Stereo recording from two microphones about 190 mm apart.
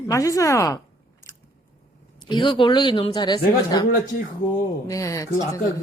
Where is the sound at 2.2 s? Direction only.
25° left (ahead or behind).